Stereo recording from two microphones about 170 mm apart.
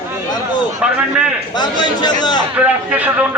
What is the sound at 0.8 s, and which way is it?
Speech, 5° right (ahead or behind).